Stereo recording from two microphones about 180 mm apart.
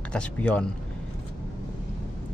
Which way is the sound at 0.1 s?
5° left (ahead or behind).